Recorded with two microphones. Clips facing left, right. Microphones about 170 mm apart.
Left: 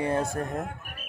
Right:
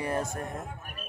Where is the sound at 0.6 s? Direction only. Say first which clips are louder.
Left 5 dB; 90° left.